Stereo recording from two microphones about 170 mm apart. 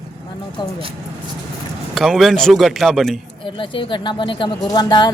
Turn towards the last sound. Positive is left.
turn(degrees=25)  # may be behind; listen again after turning